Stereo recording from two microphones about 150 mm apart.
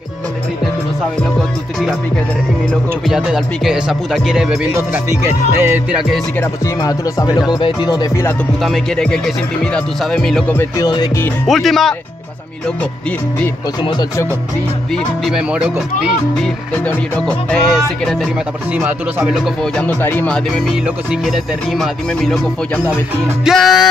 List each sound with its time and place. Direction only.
2.7 s music: 5° right (ahead or behind)
6.8 s music: 25° left (ahead or behind)
8.6 s music: 5° left (ahead or behind)
10.5 s music: 15° left (ahead or behind)
11.4 s music: centre (ahead or behind)
13.8 s music: 30° left (ahead or behind)
15.2 s music: 5° right (ahead or behind)
16.7 s music: 10° left (ahead or behind)
18.8 s speech: 15° right (ahead or behind)
19.2 s music: centre (ahead or behind)
23.4 s music: centre (ahead or behind)